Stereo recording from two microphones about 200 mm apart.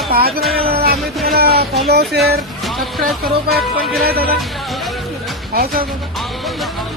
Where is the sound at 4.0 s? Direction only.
50° right (ahead or behind).